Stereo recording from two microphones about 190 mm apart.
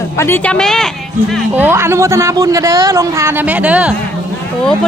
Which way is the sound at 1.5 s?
10° right (ahead or behind).